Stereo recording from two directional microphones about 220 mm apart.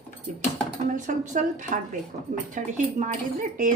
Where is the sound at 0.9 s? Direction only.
35° right (ahead or behind).